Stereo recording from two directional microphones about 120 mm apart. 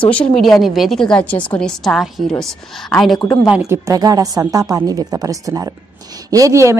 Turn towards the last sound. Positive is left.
turn(degrees=-25)  # may be behind; listen again after turning